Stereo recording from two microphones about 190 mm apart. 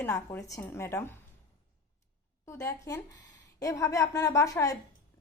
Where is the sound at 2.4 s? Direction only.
15° left (ahead or behind).